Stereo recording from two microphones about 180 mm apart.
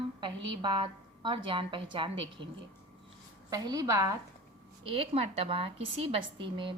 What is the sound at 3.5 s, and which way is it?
Speech, 20° right (ahead or behind).